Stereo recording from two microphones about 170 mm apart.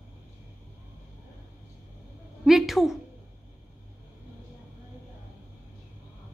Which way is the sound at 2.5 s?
Centre (ahead or behind).